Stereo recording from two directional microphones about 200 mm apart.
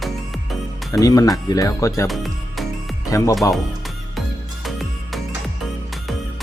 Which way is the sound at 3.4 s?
15° left (ahead or behind).